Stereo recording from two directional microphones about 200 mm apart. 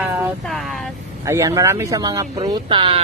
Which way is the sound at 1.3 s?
15° right (ahead or behind).